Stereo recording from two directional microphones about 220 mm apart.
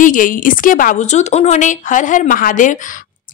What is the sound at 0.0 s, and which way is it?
A woman's voice, 40° left (ahead or behind).